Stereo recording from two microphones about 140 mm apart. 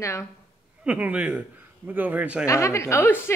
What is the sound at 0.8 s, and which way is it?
A man's voice, 10° right (ahead or behind).